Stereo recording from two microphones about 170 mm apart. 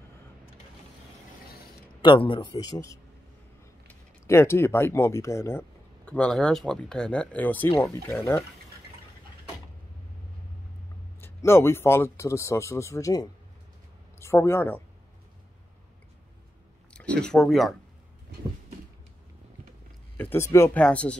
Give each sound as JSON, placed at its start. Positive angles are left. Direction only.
{"t": 2.0, "sound": "speech", "side_deg": 30}
{"t": 11.1, "sound": "speech", "side_deg": 15}
{"t": 16.9, "sound": "speech", "side_deg": 5}
{"t": 20.2, "sound": "speech", "side_deg": 15}